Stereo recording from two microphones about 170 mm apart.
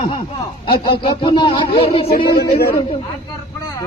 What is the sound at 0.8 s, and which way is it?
A man's voice, 25° left (ahead or behind).